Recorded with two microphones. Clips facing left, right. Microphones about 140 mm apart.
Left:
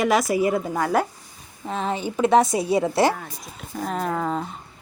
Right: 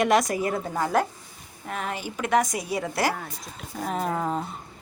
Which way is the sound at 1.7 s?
25° left (ahead or behind).